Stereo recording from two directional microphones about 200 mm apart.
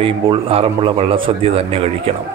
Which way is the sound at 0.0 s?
30° right (ahead or behind).